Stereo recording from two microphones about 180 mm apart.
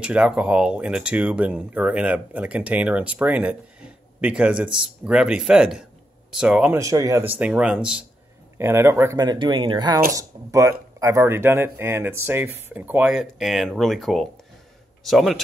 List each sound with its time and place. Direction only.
0.0 s speech: 5° right (ahead or behind)
6.8 s speech: 20° right (ahead or behind); by 15.4 s centre (ahead or behind)